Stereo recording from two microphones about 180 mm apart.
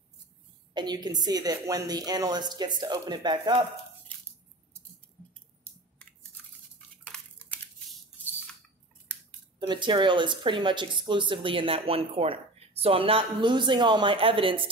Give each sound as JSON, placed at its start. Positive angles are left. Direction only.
{"t": 0.7, "sound": "speech", "side_deg": -25}
{"t": 7.1, "sound": "a sound", "side_deg": 5}
{"t": 9.6, "sound": "speech", "side_deg": -25}